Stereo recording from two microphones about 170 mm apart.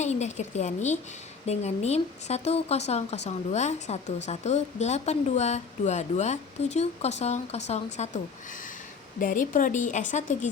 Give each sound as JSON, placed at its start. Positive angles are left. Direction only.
{"t": 0.0, "sound": "a woman's voice", "side_deg": 40}
{"t": 9.2, "sound": "a woman's voice", "side_deg": 50}